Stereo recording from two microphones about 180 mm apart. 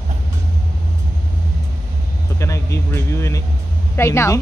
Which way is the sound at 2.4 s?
15° left (ahead or behind).